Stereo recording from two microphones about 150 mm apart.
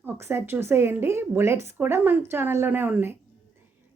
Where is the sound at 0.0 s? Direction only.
15° right (ahead or behind).